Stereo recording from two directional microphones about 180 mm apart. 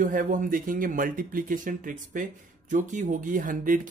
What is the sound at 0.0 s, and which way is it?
Speech, 50° right (ahead or behind).